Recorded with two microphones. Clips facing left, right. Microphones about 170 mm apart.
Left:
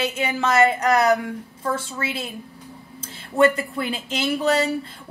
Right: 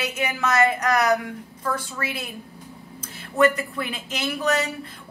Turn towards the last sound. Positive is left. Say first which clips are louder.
# left 3 dB
turn(degrees=30)  # may be behind; listen again after turning